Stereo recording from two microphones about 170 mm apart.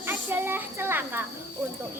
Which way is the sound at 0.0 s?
15° right (ahead or behind).